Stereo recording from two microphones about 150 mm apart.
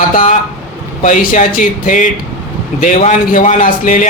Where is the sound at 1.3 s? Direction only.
65° left (ahead or behind).